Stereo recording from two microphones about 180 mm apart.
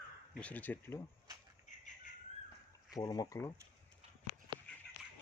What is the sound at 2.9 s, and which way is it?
Speech, 20° left (ahead or behind).